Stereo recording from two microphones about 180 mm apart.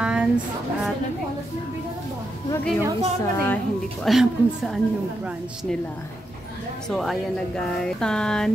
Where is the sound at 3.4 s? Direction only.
5° left (ahead or behind).